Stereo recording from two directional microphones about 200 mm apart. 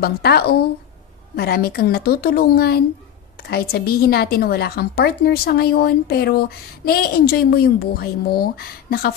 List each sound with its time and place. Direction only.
0.0 s a woman's voice: 50° left (ahead or behind)